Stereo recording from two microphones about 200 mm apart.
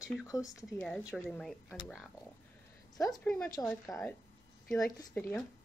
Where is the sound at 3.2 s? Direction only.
5° left (ahead or behind).